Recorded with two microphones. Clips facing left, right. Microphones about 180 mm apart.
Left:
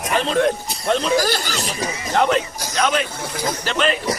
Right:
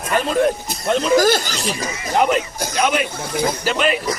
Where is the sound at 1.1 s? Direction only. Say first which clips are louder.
Right 5 dB; 45° right (ahead or behind).